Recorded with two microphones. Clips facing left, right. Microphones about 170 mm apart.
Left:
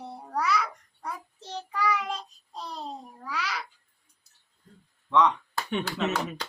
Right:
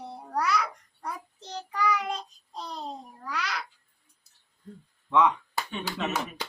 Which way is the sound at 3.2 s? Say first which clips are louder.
Even; 5° left (ahead or behind).